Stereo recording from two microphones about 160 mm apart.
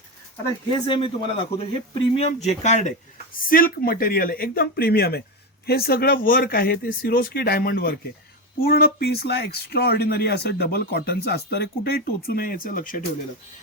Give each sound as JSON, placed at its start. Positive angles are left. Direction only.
{"t": 0.4, "sound": "a man's voice", "side_deg": 30}
{"t": 3.5, "sound": "speech", "side_deg": 65}